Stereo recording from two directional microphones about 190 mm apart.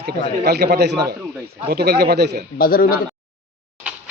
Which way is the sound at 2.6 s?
50° left (ahead or behind).